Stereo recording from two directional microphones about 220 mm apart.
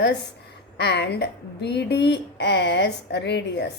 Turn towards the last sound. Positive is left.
turn(degrees=50)  # may be behind; listen again after turning